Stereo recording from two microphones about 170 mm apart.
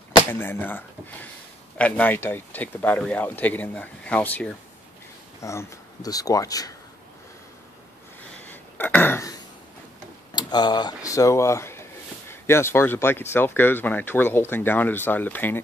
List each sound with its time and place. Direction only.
0.2 s speech: 15° left (ahead or behind)
8.2 s a sound: 10° left (ahead or behind)
10.3 s speech: 25° left (ahead or behind)